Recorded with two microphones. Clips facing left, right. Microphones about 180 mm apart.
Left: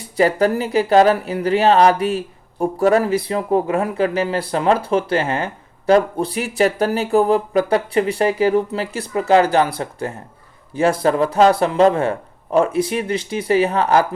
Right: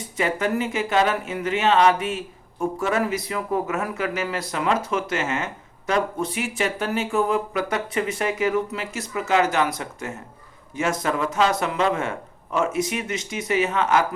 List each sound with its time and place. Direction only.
0.0 s speech: 35° left (ahead or behind)